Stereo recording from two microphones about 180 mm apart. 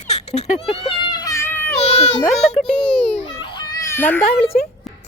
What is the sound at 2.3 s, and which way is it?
Speech, centre (ahead or behind).